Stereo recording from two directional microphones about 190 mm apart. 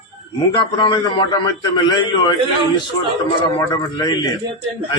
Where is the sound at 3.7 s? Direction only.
20° left (ahead or behind).